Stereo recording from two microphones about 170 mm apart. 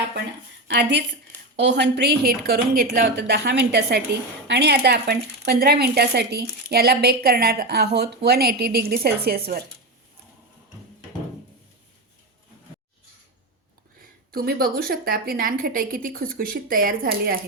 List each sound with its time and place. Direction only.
0.7 s speech: 85° right; by 9.4 s 65° right (ahead or behind)
14.3 s a woman's voice: 60° right (ahead or behind)